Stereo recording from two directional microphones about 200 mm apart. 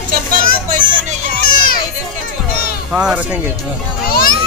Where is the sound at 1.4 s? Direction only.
45° left (ahead or behind).